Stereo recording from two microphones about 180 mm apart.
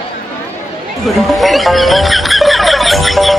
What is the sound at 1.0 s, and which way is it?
Speech, centre (ahead or behind).